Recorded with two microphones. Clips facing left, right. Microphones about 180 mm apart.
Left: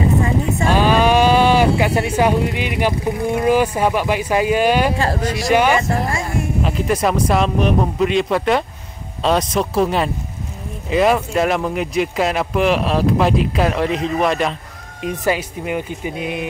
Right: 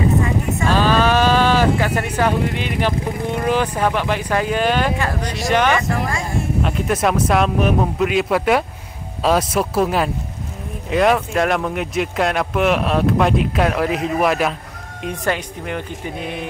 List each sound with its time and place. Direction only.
0.7 s speech: 15° left (ahead or behind)
5.8 s speech: 25° left (ahead or behind)
6.6 s speech: centre (ahead or behind)